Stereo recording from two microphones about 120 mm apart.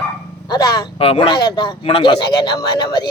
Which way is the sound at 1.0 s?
50° left (ahead or behind).